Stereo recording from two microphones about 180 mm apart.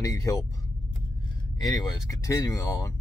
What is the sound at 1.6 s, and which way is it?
Speech, 20° left (ahead or behind).